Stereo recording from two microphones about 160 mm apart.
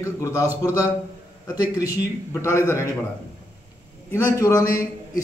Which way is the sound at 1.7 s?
20° left (ahead or behind).